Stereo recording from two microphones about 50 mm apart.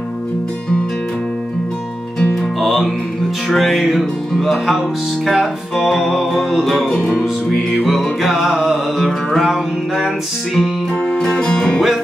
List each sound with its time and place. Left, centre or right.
2.6 s music: centre
7.1 s music: centre
7.5 s music: centre
11.1 s music: centre